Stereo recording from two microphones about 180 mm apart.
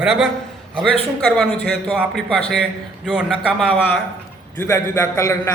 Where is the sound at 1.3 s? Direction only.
Centre (ahead or behind).